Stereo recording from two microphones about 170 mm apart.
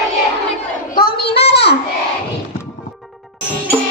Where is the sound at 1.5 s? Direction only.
75° left (ahead or behind).